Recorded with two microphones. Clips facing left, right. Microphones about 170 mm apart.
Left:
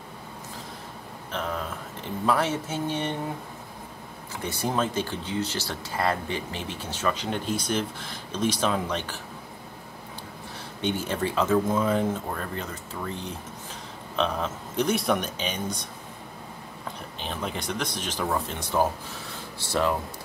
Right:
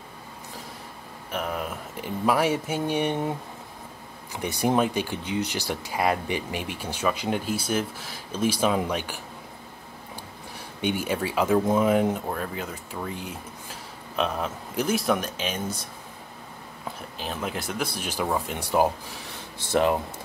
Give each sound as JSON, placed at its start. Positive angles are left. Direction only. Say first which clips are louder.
{"t": 1.3, "sound": "speech", "louder": "right 1 dB", "side_deg": -10}
{"t": 4.3, "sound": "speech", "louder": "right 5 dB", "side_deg": -15}
{"t": 10.8, "sound": "speech", "louder": "right 1 dB", "side_deg": -10}
{"t": 14.1, "sound": "speech", "louder": "even", "side_deg": -5}
{"t": 17.2, "sound": "speech", "louder": "right 1 dB", "side_deg": -5}